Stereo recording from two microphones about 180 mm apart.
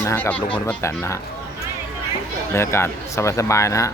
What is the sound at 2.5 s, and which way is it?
A man's voice, 15° left (ahead or behind).